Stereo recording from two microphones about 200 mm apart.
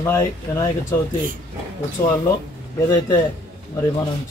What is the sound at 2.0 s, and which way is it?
Speech, 15° left (ahead or behind).